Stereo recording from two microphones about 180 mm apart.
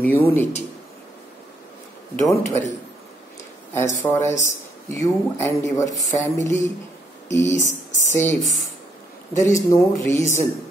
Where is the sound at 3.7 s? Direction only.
15° left (ahead or behind).